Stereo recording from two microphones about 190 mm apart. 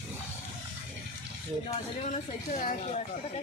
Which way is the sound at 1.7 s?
40° left (ahead or behind).